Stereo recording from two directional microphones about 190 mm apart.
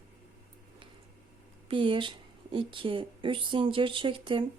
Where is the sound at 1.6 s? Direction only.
25° right (ahead or behind).